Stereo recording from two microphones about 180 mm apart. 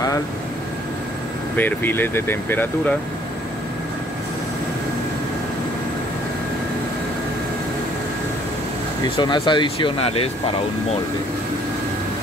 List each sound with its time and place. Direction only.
1.6 s speech: 10° left (ahead or behind)
9.1 s speech: 25° left (ahead or behind)